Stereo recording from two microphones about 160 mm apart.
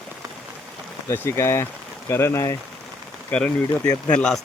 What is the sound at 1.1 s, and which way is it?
Speech, 15° left (ahead or behind).